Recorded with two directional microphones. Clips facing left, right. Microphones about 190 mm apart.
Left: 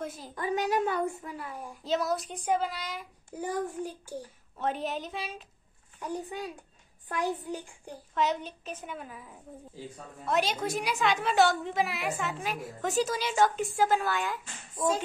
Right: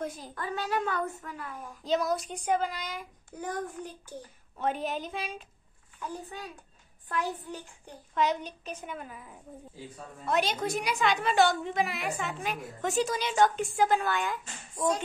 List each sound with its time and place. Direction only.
0.0 s a sound: 5° left (ahead or behind)
0.3 s a woman's voice: 15° left (ahead or behind)
4.6 s a woman's voice: centre (ahead or behind)
5.9 s a woman's voice: 15° left (ahead or behind)
8.1 s a woman's voice: centre (ahead or behind)